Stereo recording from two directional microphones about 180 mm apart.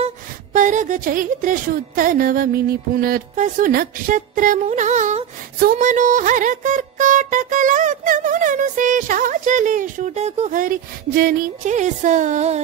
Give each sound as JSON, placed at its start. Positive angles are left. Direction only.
{"t": 0.0, "sound": "a woman's voice", "side_deg": -45}
{"t": 11.1, "sound": "a woman's voice", "side_deg": -55}